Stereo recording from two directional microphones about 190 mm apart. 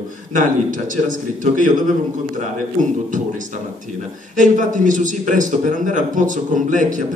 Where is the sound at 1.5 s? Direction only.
45° right (ahead or behind).